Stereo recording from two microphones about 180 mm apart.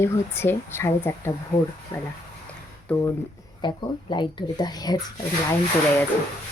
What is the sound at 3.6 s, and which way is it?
Speech, 25° left (ahead or behind).